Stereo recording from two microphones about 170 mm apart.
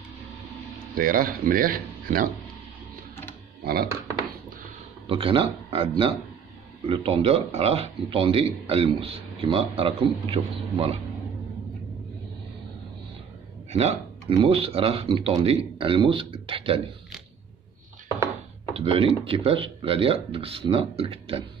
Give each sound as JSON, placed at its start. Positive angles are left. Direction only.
{"t": 0.9, "sound": "speech", "side_deg": -55}
{"t": 3.6, "sound": "speech", "side_deg": -65}
{"t": 5.0, "sound": "a man's voice", "side_deg": -30}
{"t": 13.7, "sound": "a man's voice", "side_deg": -40}
{"t": 18.8, "sound": "a man's voice", "side_deg": -35}